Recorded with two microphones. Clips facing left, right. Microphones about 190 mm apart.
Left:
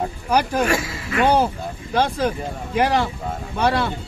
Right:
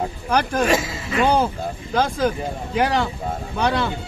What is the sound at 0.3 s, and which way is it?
Speech, 5° left (ahead or behind).